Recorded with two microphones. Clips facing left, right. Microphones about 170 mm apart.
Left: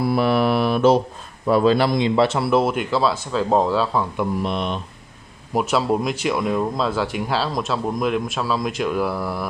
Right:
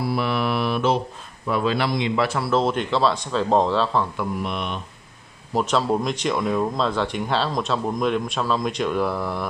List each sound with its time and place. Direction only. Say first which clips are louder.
0.0 s mantra: left 5 dB; 45° left (ahead or behind); by 2.5 s 25° left (ahead or behind)
2.5 s speech: left 2 dB; 5° left (ahead or behind)
4.4 s mantra: left 4 dB; 30° left (ahead or behind)
5.5 s speech: left 1 dB; 10° left (ahead or behind)